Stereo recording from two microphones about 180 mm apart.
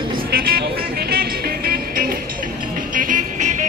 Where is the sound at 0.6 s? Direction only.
60° right (ahead or behind).